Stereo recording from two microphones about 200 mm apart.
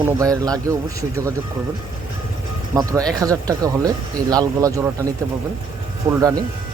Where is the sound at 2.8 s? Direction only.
15° right (ahead or behind).